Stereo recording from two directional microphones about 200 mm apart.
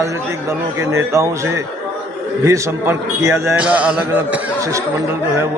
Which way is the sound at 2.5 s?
15° right (ahead or behind).